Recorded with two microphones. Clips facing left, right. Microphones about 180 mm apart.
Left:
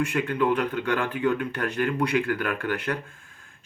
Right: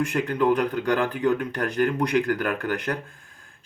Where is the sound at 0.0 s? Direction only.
40° right (ahead or behind).